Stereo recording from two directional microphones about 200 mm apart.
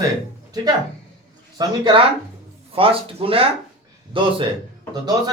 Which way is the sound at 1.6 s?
25° right (ahead or behind).